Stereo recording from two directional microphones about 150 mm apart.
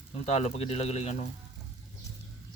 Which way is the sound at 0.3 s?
50° left (ahead or behind).